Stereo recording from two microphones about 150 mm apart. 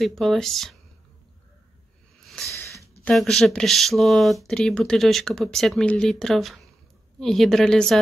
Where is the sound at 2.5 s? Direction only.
15° left (ahead or behind).